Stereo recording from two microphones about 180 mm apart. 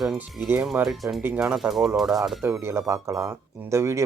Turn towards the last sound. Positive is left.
turn(degrees=-15)  # may be behind; listen again after turning